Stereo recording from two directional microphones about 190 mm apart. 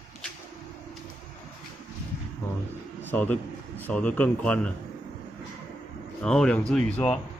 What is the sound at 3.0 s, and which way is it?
A man's voice, 10° left (ahead or behind).